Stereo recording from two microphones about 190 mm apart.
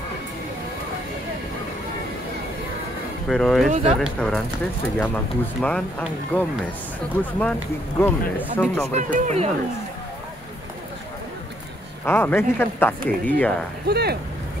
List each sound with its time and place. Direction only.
3.3 s speech: 5° left (ahead or behind)
3.7 s speech: 35° right (ahead or behind)
4.0 s speech: 5° left (ahead or behind)
8.0 s speech: 10° left (ahead or behind)
8.9 s speech: 35° right (ahead or behind)
12.0 s speech: 10° left (ahead or behind)
13.8 s speech: 55° right (ahead or behind)